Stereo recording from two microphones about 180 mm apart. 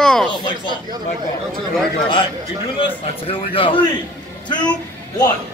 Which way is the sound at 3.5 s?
30° left (ahead or behind).